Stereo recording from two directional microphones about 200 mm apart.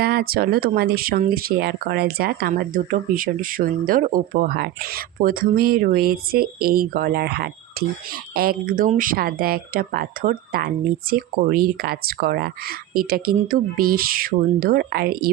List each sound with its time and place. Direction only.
0.0 s speech: 50° right (ahead or behind)